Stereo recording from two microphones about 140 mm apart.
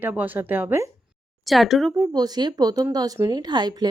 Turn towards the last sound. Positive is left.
turn(degrees=-30)  # may be behind; listen again after turning